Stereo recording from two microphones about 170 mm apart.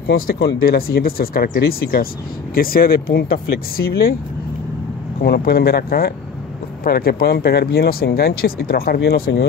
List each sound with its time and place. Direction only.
0.0 s speech: 65° left (ahead or behind)
5.2 s speech: 65° left (ahead or behind)